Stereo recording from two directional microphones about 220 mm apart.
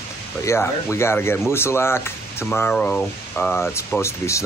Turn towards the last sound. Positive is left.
turn(degrees=15)  # may be behind; listen again after turning